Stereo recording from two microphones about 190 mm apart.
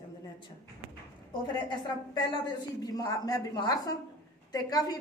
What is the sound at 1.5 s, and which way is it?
A woman's voice, 25° left (ahead or behind).